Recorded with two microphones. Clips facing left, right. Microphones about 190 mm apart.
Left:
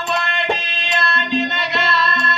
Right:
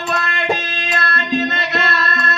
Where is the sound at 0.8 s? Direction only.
50° right (ahead or behind).